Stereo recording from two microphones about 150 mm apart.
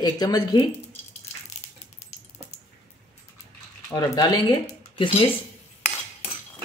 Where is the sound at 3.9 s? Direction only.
20° left (ahead or behind).